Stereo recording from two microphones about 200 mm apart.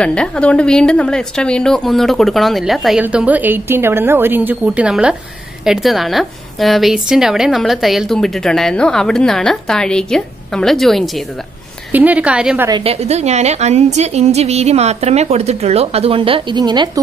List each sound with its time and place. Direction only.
0.0 s a woman's voice: 5° left (ahead or behind)
12.6 s a woman's voice: 25° right (ahead or behind)